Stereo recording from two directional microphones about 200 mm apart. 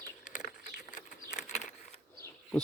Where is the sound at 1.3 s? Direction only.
35° left (ahead or behind).